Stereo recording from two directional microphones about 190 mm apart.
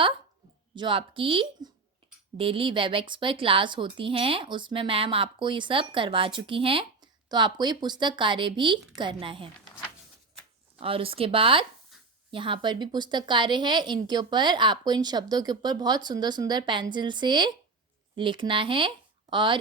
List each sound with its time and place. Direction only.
0.8 s speech: 25° right (ahead or behind)
10.8 s speech: 30° right (ahead or behind)